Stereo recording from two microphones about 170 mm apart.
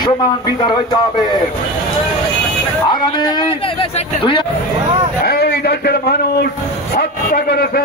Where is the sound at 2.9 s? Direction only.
25° left (ahead or behind).